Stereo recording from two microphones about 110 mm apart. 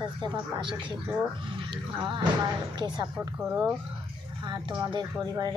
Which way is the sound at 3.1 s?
15° right (ahead or behind).